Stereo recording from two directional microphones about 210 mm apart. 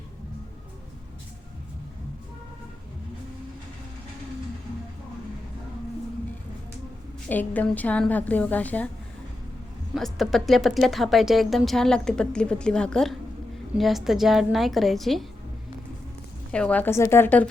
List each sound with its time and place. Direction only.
7.3 s a woman's voice: 10° left (ahead or behind)
9.9 s speech: centre (ahead or behind)
16.5 s a woman's voice: 5° left (ahead or behind)